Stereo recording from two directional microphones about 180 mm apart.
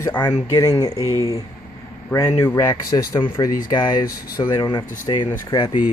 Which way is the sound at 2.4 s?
15° left (ahead or behind).